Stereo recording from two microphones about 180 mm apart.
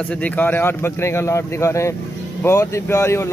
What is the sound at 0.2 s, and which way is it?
Speech, 10° left (ahead or behind).